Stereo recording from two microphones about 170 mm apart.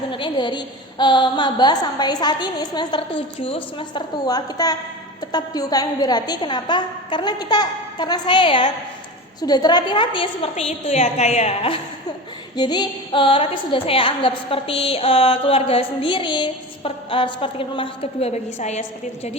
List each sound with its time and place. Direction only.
0.1 s a woman's voice: 30° left (ahead or behind)
12.5 s a woman's voice: 25° left (ahead or behind); by 19.4 s 40° left (ahead or behind)